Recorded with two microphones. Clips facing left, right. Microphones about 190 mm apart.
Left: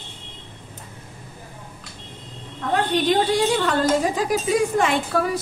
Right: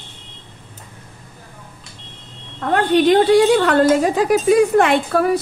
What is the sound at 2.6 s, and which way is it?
A woman's voice, 60° right (ahead or behind).